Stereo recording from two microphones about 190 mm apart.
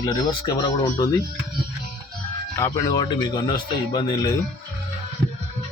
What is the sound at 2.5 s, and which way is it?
Speech, 15° left (ahead or behind).